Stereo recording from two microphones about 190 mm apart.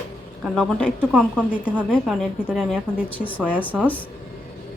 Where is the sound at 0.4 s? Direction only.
Centre (ahead or behind).